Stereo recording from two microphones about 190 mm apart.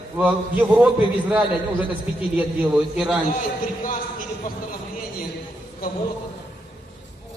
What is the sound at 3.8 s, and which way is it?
Speech, 45° left (ahead or behind).